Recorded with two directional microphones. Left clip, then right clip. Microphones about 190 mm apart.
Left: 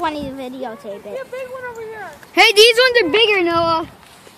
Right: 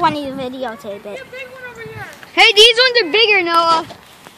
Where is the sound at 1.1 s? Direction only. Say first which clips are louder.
Left 5 dB; 55° right (ahead or behind).